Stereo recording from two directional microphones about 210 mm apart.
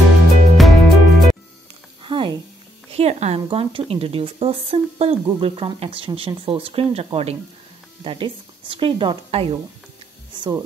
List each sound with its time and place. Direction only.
0.6 s music: centre (ahead or behind)
2.0 s a sound: 25° right (ahead or behind)
2.9 s speech: 30° right (ahead or behind)
10.3 s music: 20° right (ahead or behind)